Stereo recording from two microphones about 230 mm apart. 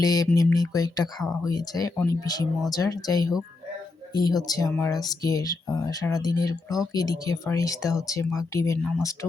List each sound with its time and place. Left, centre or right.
0.0 s speech: centre